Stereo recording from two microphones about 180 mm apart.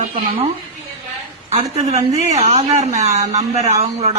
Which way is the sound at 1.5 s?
35° right (ahead or behind).